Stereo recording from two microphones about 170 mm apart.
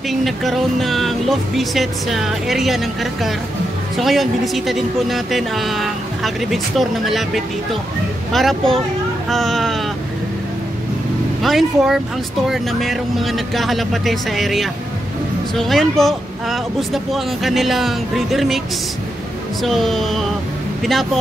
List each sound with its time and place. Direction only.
0.1 s a woman's voice: centre (ahead or behind)
11.4 s a woman's voice: centre (ahead or behind)
19.6 s a woman's voice: centre (ahead or behind)